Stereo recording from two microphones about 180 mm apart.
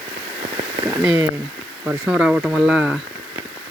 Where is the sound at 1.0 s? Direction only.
5° right (ahead or behind).